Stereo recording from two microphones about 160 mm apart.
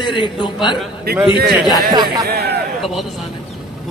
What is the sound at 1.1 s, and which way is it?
Speech, 80° right.